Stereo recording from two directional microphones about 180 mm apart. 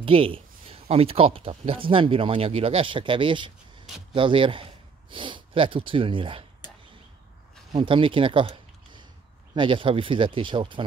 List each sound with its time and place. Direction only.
0.0 s speech: 30° right (ahead or behind)
7.7 s speech: 30° right (ahead or behind)